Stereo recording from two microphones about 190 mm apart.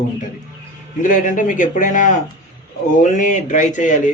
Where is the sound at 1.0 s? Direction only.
45° left (ahead or behind).